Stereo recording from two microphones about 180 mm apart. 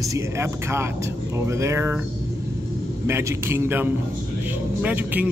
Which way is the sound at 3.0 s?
15° right (ahead or behind).